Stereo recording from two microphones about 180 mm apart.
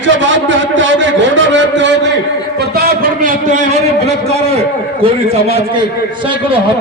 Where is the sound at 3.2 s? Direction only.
45° right (ahead or behind).